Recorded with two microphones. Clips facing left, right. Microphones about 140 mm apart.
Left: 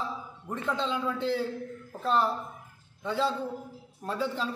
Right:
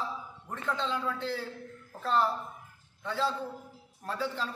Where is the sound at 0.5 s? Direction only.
15° left (ahead or behind).